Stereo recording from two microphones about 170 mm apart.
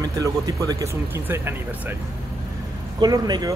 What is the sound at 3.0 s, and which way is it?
Speech, 25° right (ahead or behind).